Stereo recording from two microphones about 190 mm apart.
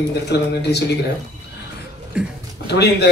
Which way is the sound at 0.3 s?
60° left (ahead or behind).